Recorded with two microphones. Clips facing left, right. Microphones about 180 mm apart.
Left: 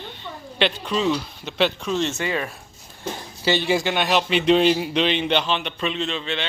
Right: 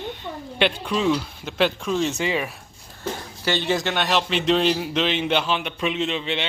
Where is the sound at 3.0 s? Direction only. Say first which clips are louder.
Left 1 dB; 15° left (ahead or behind).